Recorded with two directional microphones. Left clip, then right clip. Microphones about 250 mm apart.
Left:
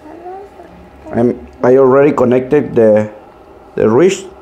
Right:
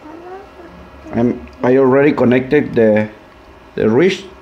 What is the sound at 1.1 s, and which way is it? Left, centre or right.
Speech, centre.